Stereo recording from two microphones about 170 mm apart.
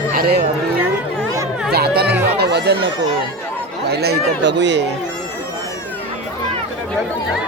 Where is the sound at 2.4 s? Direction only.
75° right (ahead or behind).